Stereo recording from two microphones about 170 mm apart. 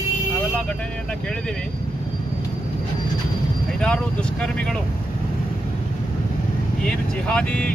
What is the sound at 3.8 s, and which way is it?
Vehicle, 5° left (ahead or behind).